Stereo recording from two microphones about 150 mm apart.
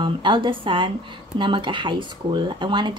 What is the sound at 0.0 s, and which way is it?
Speech, 35° right (ahead or behind).